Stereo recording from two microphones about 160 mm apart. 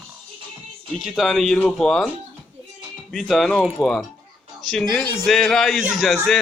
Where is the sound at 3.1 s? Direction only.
Centre (ahead or behind).